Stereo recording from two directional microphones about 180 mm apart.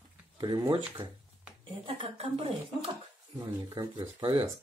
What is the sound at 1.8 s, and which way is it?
Speech, 30° right (ahead or behind).